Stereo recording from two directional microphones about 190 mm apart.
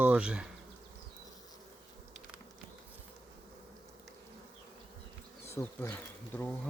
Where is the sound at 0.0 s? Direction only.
5° right (ahead or behind).